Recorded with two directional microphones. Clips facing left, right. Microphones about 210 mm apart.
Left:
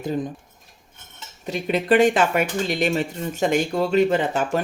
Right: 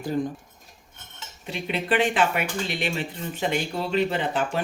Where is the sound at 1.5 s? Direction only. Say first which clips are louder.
Left 6 dB; 45° left (ahead or behind).